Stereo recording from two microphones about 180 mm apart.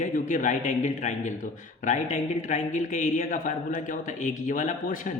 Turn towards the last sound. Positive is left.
turn(degrees=45)  # may be behind; listen again after turning